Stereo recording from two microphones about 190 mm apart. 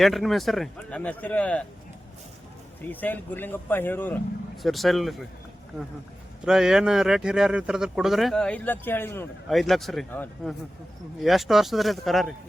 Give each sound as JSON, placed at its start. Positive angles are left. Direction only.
{"t": 0.0, "sound": "speech", "side_deg": 0}
{"t": 2.8, "sound": "speech", "side_deg": 10}
{"t": 4.5, "sound": "speech", "side_deg": 0}
{"t": 6.4, "sound": "speech", "side_deg": 0}
{"t": 9.5, "sound": "speech", "side_deg": 0}